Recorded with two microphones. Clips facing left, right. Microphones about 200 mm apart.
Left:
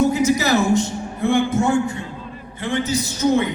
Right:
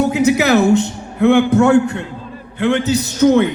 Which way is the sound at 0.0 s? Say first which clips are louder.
Right 3 dB; 65° right (ahead or behind).